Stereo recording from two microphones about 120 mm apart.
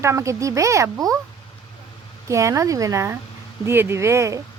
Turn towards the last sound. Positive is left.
turn(degrees=-25)  # may be behind; listen again after turning